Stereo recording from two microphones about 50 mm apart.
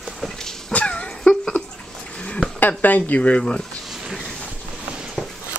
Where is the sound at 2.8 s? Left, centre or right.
Left.